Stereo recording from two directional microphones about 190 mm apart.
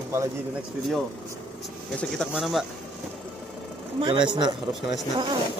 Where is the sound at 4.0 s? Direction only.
25° right (ahead or behind).